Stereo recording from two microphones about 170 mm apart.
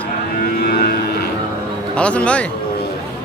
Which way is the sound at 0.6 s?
65° left (ahead or behind).